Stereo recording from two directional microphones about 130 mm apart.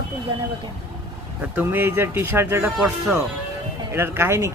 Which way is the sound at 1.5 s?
15° right (ahead or behind).